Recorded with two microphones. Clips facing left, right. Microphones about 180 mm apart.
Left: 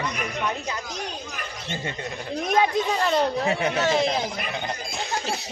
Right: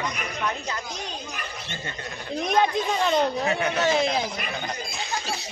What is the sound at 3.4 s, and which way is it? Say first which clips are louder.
Speech: left 1 dB; 30° left (ahead or behind).